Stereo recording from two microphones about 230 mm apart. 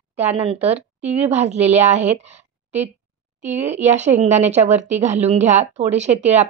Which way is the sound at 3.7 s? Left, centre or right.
Right.